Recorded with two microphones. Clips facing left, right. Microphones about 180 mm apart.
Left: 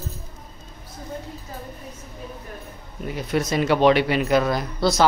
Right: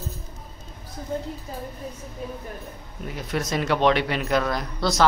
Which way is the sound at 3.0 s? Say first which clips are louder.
Left 4 dB; centre (ahead or behind).